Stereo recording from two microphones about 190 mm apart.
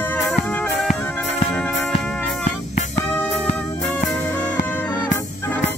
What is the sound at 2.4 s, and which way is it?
Music, 40° left (ahead or behind).